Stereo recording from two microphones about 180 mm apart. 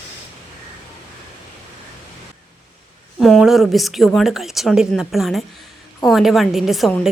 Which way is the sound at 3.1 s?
Centre (ahead or behind).